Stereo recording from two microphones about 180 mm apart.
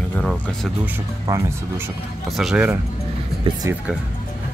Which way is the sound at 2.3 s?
Centre (ahead or behind).